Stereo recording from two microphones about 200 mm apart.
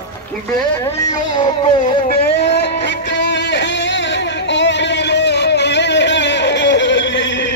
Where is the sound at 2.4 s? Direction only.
55° left (ahead or behind).